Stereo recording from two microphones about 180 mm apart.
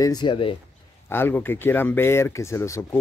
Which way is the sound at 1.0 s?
10° left (ahead or behind).